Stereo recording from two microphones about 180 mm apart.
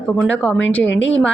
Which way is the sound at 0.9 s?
90° left.